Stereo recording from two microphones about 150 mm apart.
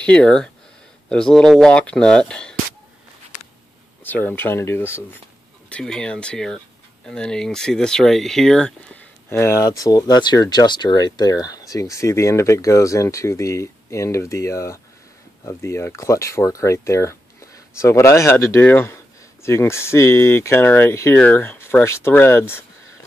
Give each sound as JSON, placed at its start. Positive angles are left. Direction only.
{"t": 0.0, "sound": "speech", "side_deg": 5}
{"t": 3.3, "sound": "a sound", "side_deg": 55}
{"t": 4.0, "sound": "speech", "side_deg": 10}